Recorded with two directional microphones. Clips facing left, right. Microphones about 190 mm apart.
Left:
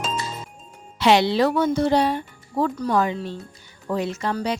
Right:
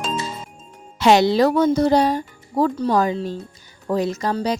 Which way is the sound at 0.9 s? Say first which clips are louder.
Right 3 dB; 45° right (ahead or behind).